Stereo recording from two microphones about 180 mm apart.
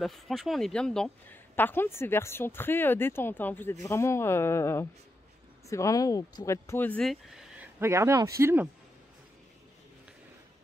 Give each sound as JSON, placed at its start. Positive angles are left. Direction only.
{"t": 0.0, "sound": "speech", "side_deg": 0}
{"t": 7.8, "sound": "speech", "side_deg": -15}